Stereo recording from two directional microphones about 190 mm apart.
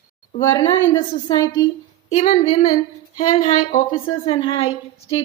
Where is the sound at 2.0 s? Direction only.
35° left (ahead or behind).